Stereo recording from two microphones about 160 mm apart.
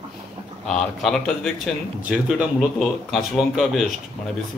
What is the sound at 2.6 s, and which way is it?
Speech, centre (ahead or behind).